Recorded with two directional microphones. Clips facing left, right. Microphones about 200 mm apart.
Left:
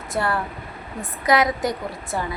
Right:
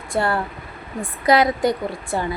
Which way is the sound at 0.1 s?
30° right (ahead or behind).